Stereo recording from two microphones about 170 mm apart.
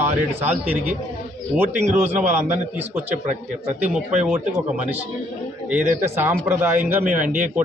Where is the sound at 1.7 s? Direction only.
45° right (ahead or behind).